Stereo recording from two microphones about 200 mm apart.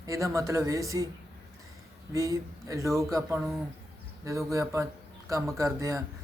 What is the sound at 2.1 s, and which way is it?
Speech, 15° right (ahead or behind).